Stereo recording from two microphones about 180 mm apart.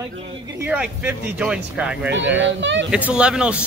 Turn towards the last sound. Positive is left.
turn(degrees=-5)  # may be behind; listen again after turning